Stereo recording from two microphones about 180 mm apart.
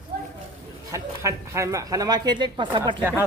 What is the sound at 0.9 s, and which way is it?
Speech, 15° right (ahead or behind).